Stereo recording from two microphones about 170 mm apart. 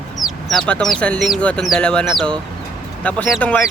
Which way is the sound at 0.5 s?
5° left (ahead or behind).